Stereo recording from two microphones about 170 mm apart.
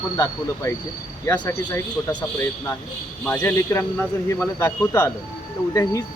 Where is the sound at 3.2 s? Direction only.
15° left (ahead or behind).